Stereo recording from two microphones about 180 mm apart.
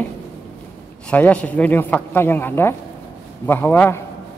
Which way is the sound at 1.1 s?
10° left (ahead or behind).